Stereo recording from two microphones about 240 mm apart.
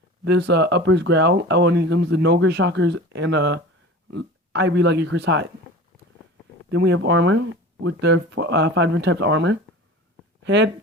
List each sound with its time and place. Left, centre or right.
0.3 s speech: right
6.7 s speech: right